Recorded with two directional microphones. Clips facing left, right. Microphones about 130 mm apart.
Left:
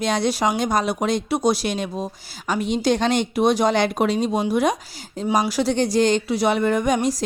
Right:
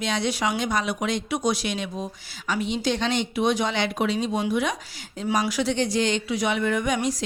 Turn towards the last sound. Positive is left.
turn(degrees=40)  # may be behind; listen again after turning